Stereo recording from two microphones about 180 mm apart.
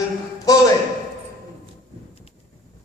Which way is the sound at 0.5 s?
20° left (ahead or behind).